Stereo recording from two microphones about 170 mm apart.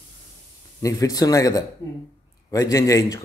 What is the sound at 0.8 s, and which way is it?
A man's voice, 20° left (ahead or behind).